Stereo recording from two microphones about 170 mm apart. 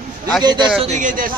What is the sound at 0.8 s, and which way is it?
Speech, 45° right (ahead or behind).